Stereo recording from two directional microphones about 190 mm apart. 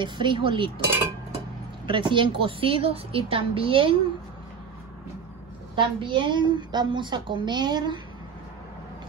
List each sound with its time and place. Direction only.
0.0 s a woman's voice: 25° right (ahead or behind)
1.9 s a woman's voice: 25° right (ahead or behind)
5.8 s a woman's voice: 25° right (ahead or behind)